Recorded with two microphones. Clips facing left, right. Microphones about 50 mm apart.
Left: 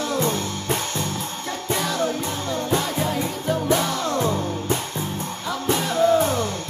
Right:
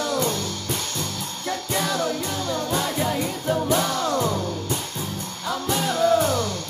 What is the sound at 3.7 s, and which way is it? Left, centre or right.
Music, centre.